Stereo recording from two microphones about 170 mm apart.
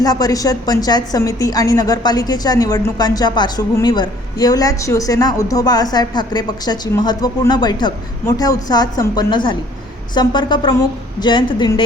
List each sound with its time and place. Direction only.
0.0 s a woman's voice: 20° left (ahead or behind)